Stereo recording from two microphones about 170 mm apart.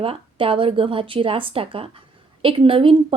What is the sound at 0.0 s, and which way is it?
A woman's voice, 35° right (ahead or behind).